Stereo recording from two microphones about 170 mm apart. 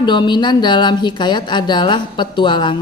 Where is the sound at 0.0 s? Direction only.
25° left (ahead or behind).